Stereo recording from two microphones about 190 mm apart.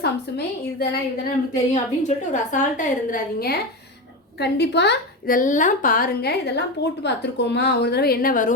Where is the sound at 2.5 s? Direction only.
45° left (ahead or behind).